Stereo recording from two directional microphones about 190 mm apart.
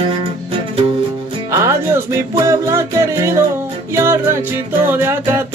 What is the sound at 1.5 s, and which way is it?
Music, 15° right (ahead or behind).